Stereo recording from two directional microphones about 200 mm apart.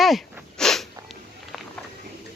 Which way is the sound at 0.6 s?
Centre (ahead or behind).